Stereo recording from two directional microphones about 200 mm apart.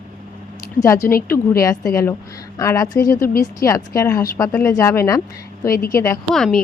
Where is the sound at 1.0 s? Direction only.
50° left (ahead or behind).